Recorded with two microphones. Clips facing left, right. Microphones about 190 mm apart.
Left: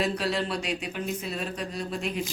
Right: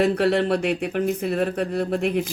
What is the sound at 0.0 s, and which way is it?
Speech, 60° right (ahead or behind).